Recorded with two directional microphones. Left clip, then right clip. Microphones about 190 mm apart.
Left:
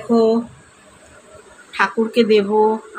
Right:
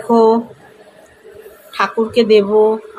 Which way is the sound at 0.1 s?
5° right (ahead or behind).